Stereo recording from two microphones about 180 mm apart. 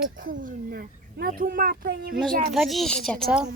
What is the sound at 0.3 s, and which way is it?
Speech, 55° right (ahead or behind).